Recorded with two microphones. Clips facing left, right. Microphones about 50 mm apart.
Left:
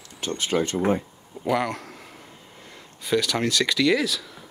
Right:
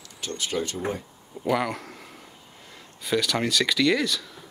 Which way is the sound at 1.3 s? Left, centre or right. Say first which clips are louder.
Left 1 dB; centre.